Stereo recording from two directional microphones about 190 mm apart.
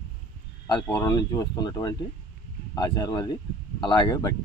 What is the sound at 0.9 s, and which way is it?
Speech, 20° left (ahead or behind).